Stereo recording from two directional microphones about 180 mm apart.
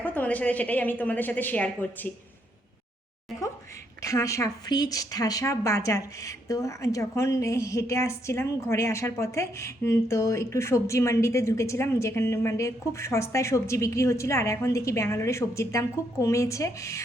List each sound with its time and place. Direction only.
0.0 s speech: 10° left (ahead or behind)
4.0 s speech: 15° left (ahead or behind)